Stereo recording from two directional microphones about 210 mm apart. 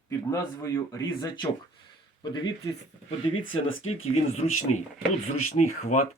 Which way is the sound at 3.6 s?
70° left (ahead or behind).